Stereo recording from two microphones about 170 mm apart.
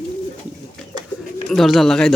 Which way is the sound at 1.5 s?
Centre (ahead or behind).